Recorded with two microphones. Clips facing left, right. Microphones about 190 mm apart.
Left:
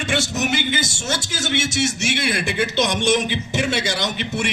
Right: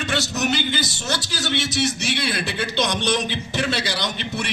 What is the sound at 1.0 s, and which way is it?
Speech, 25° left (ahead or behind).